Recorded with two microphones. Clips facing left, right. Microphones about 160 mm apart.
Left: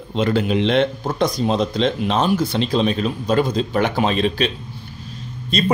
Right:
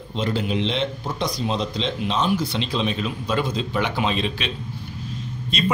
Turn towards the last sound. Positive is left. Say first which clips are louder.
# left 4 dB
turn(degrees=40)  # may be behind; listen again after turning